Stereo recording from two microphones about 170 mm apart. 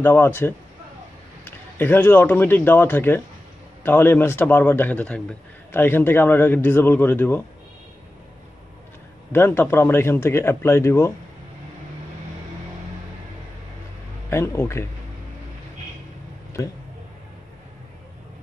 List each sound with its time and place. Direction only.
0.0 s a man's voice: 10° left (ahead or behind)
9.3 s a man's voice: 15° left (ahead or behind)
14.3 s a man's voice: 15° left (ahead or behind)
16.6 s speech: 20° left (ahead or behind)